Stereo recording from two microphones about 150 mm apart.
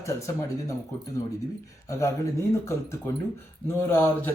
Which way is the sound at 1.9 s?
20° left (ahead or behind).